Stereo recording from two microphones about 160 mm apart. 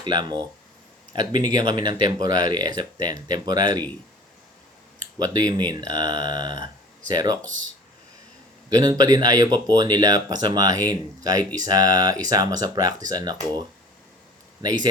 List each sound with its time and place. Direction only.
0.0 s speech: 25° right (ahead or behind)
5.2 s speech: 25° right (ahead or behind)
8.7 s speech: 25° right (ahead or behind)
14.6 s a man's voice: 25° right (ahead or behind)